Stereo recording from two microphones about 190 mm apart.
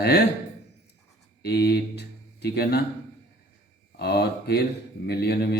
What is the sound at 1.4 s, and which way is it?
Speech, 60° left (ahead or behind).